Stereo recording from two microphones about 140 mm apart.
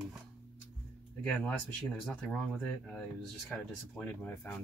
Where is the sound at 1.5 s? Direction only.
5° left (ahead or behind).